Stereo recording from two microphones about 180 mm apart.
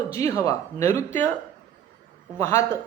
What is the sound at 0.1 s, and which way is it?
Speech, 15° left (ahead or behind).